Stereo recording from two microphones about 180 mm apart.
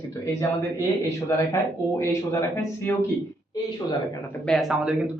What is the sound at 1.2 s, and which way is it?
Speech, 15° left (ahead or behind).